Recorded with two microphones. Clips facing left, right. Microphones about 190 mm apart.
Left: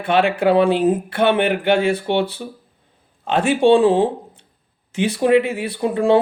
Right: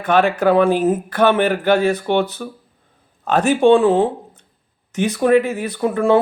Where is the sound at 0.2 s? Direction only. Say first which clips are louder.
Even; 15° left (ahead or behind).